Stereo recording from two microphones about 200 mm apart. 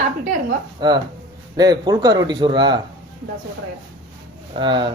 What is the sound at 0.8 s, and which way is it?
Speech, 20° right (ahead or behind).